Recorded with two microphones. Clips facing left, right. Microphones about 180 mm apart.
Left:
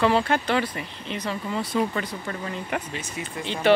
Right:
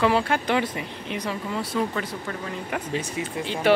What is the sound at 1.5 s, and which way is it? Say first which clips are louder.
Speech: left 2 dB; centre (ahead or behind).